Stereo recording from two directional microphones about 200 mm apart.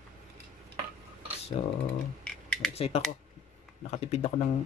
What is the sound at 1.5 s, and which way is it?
Speech, 35° left (ahead or behind).